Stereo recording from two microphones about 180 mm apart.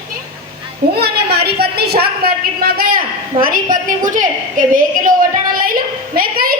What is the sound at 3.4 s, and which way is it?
A woman's voice, 50° right (ahead or behind).